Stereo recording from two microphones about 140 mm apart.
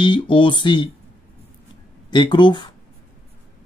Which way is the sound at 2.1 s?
35° left (ahead or behind).